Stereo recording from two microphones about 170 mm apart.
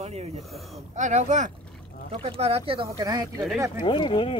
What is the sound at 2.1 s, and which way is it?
Speech, 35° right (ahead or behind).